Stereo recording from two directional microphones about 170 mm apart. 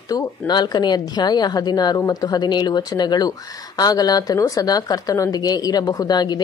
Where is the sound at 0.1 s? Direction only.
25° left (ahead or behind).